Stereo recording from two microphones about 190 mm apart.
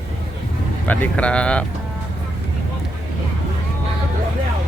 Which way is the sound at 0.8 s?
10° left (ahead or behind).